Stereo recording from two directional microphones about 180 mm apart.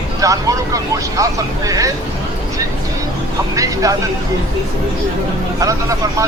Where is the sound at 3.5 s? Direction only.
20° right (ahead or behind).